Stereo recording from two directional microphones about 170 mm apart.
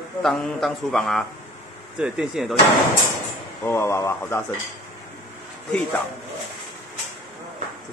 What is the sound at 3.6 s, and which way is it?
Speech, 15° left (ahead or behind).